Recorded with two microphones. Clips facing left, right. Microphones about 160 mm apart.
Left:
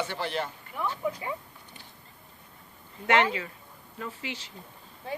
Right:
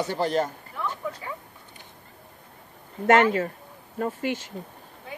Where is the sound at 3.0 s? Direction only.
45° right (ahead or behind).